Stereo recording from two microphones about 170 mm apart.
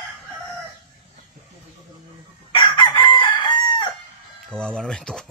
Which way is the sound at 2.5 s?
30° left (ahead or behind).